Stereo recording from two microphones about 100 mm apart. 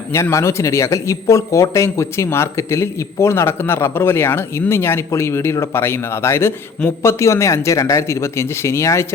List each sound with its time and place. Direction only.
0.1 s speech: 30° left (ahead or behind)